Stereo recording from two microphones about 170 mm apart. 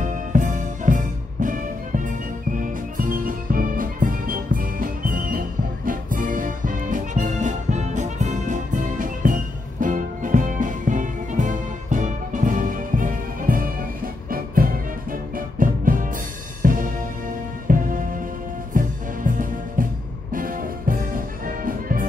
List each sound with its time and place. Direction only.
0.0 s music: 50° right (ahead or behind)
2.6 s music: 50° right (ahead or behind)